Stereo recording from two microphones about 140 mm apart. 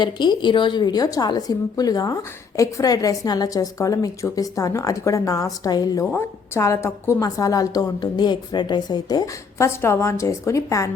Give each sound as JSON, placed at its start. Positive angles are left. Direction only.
{"t": 0.0, "sound": "a woman's voice", "side_deg": 35}
{"t": 6.1, "sound": "a woman's voice", "side_deg": 15}